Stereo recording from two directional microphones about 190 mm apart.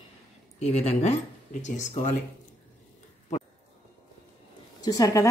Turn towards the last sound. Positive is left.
turn(degrees=20)  # may be behind; listen again after turning